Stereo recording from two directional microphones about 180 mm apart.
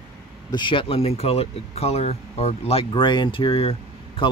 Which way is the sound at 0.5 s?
25° left (ahead or behind).